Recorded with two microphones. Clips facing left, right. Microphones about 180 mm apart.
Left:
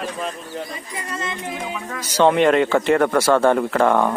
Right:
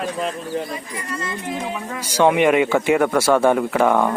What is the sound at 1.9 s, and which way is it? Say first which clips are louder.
Speech: even; 10° right (ahead or behind).